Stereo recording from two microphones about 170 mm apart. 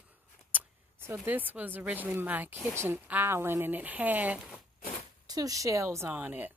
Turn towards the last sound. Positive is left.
turn(degrees=-10)  # may be behind; listen again after turning